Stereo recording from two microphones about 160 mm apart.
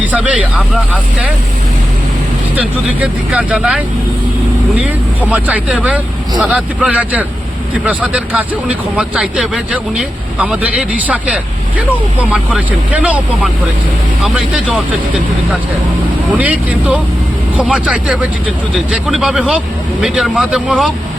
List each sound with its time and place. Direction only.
0.0 s speech: 10° right (ahead or behind)
2.6 s speech: 10° right (ahead or behind)
16.4 s speech: 10° right (ahead or behind)